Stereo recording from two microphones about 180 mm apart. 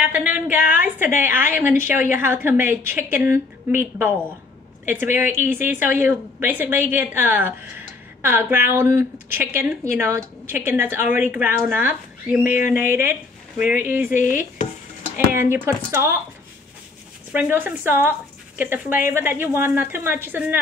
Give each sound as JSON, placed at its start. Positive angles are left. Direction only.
{"t": 0.0, "sound": "a woman's voice", "side_deg": -10}
{"t": 5.1, "sound": "a woman's voice", "side_deg": -10}
{"t": 12.4, "sound": "chopping", "side_deg": 45}
{"t": 12.9, "sound": "a woman's voice", "side_deg": -10}
{"t": 14.1, "sound": "chopping", "side_deg": 45}
{"t": 15.1, "sound": "a woman's voice", "side_deg": -10}
{"t": 17.3, "sound": "a woman's voice", "side_deg": -10}